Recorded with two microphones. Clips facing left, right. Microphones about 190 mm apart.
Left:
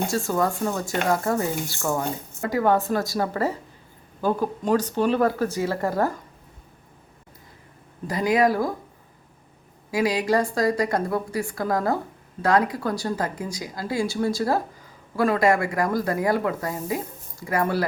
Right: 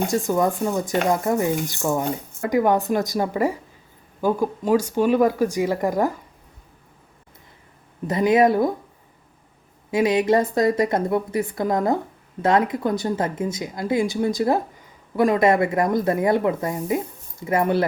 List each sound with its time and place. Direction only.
0.1 s speech: 15° right (ahead or behind)
8.0 s speech: 25° right (ahead or behind)
9.9 s speech: 20° right (ahead or behind)